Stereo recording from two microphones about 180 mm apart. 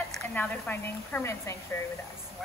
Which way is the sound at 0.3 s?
10° left (ahead or behind).